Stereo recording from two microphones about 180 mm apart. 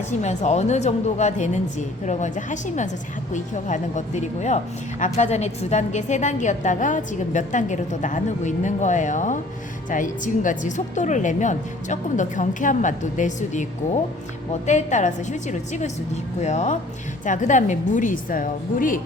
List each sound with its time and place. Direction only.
0.2 s a woman's voice: 40° left (ahead or behind)
14.7 s a woman's voice: 40° left (ahead or behind)